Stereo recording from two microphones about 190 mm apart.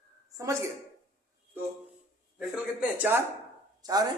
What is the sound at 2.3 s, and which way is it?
Speech, centre (ahead or behind).